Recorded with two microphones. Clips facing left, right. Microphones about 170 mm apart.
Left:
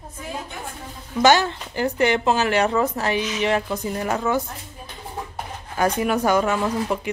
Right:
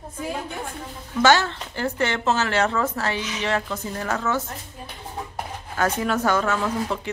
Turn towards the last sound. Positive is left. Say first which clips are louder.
# left 2 dB
turn(degrees=15)  # may be behind; listen again after turning